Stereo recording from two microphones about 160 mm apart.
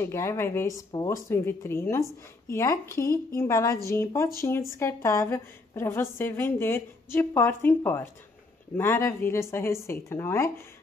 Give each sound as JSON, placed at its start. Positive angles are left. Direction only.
{"t": 0.0, "sound": "a woman's voice", "side_deg": 15}